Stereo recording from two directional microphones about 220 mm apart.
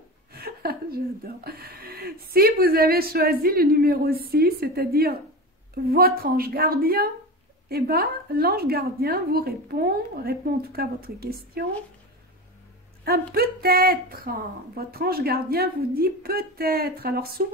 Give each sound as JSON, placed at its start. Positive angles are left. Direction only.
{"t": 0.3, "sound": "speech", "side_deg": -45}
{"t": 13.0, "sound": "speech", "side_deg": -45}